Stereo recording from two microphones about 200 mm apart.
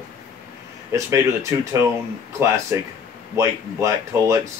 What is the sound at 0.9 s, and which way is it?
Speech, 15° right (ahead or behind).